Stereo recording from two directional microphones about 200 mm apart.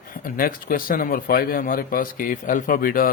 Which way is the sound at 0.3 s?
45° left (ahead or behind).